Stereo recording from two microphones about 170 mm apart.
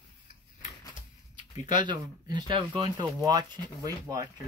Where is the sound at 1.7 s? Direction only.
25° right (ahead or behind).